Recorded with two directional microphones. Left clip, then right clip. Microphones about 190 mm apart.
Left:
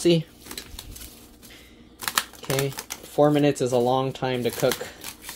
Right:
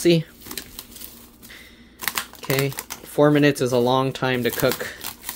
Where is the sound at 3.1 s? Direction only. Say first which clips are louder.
Right 3 dB; 20° right (ahead or behind).